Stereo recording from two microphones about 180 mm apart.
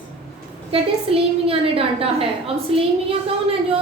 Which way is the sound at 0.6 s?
30° right (ahead or behind).